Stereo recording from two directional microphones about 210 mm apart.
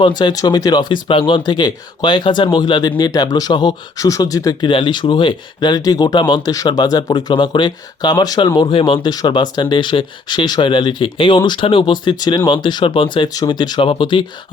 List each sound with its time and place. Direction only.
0.0 s speech: 20° left (ahead or behind)